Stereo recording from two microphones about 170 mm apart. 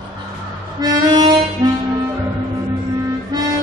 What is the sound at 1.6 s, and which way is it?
Music, 20° right (ahead or behind).